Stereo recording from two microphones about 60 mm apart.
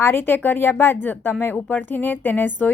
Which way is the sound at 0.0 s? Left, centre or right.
Left.